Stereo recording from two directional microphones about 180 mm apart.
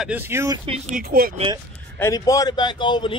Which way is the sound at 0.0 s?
10° right (ahead or behind).